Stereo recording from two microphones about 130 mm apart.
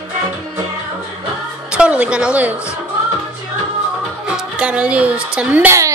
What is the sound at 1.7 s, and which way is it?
Speech, 10° right (ahead or behind).